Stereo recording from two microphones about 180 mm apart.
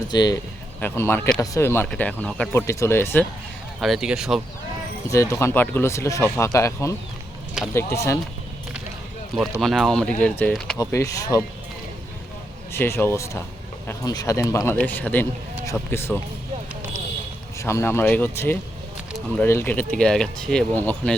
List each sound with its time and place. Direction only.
0.1 s speech: 25° left (ahead or behind)
0.8 s speech: 10° left (ahead or behind)
2.5 s speech: 15° left (ahead or behind)
3.8 s speech: centre (ahead or behind)
5.0 s speech: 15° left (ahead or behind)
9.6 s speech: centre (ahead or behind)
10.8 s speech: 20° left (ahead or behind)
12.7 s speech: 15° left (ahead or behind)
17.6 s speech: 15° left (ahead or behind)